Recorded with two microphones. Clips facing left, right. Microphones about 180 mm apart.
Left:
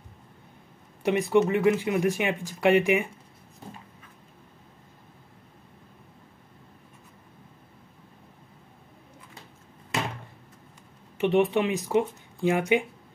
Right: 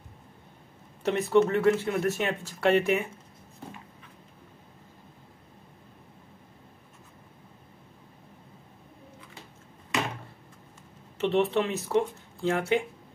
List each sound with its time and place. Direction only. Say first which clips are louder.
1.0 s speech: left 1 dB; 15° left (ahead or behind)
11.1 s speech: left 2 dB; 15° left (ahead or behind)